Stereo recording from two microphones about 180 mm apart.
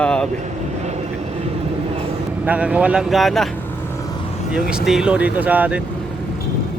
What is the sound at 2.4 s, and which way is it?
Speech, 5° right (ahead or behind).